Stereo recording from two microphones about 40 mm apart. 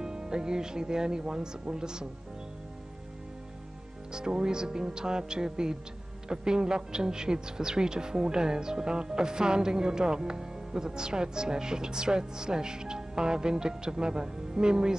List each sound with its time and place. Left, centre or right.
0.0 s speech: centre
4.1 s speech: centre